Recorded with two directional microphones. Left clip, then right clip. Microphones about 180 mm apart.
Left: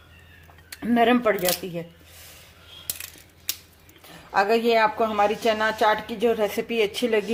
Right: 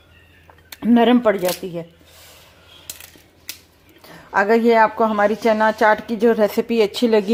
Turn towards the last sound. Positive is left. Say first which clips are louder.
# right 6 dB
turn(degrees=-35)  # may be behind; listen again after turning